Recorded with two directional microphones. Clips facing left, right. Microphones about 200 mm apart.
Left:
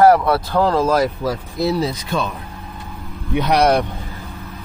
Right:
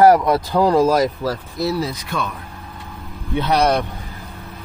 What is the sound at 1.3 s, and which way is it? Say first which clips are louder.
Speech: left 2 dB; 20° left (ahead or behind).